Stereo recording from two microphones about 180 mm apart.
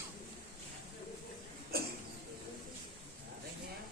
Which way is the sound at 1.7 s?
60° right (ahead or behind).